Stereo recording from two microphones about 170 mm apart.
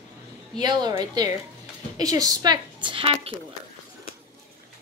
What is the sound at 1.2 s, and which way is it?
A woman's voice, 25° right (ahead or behind).